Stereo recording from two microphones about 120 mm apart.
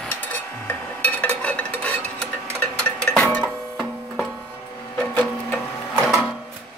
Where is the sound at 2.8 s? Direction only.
10° left (ahead or behind).